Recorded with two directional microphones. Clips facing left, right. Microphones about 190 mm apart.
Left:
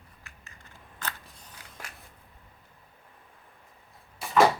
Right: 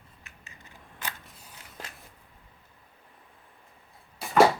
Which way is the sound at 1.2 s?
5° right (ahead or behind).